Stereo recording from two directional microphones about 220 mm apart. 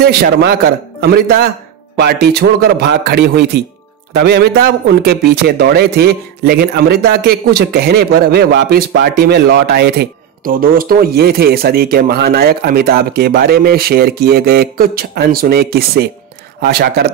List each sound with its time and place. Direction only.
0.0 s a man's voice: 45° right (ahead or behind)